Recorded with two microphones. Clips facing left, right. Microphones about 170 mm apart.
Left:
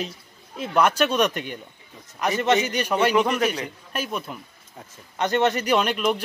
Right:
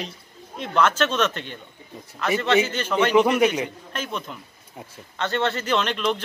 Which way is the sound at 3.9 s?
10° left (ahead or behind).